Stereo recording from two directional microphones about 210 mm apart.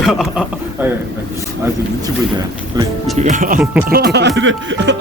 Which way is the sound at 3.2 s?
40° right (ahead or behind).